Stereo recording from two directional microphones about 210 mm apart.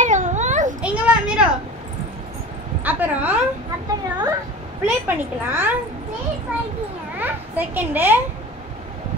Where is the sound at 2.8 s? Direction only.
10° right (ahead or behind).